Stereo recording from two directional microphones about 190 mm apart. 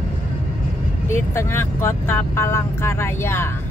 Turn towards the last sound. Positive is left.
turn(degrees=15)  # may be behind; listen again after turning